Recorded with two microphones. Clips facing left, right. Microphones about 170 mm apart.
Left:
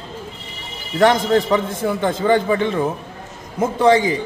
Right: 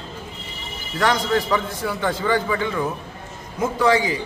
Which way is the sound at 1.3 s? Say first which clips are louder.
Left 4 dB; 25° left (ahead or behind).